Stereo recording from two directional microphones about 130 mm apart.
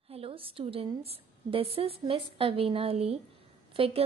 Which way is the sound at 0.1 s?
45° right (ahead or behind).